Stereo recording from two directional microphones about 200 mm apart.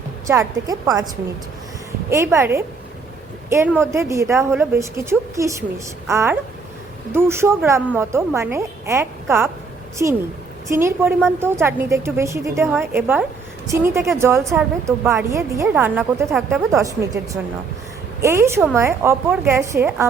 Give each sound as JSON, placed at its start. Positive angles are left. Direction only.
{"t": 0.3, "sound": "a woman's voice", "side_deg": -15}
{"t": 2.0, "sound": "a woman's voice", "side_deg": -15}
{"t": 3.8, "sound": "a woman's voice", "side_deg": -15}